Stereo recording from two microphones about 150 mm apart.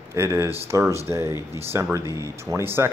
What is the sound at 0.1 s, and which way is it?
Speech, 20° right (ahead or behind).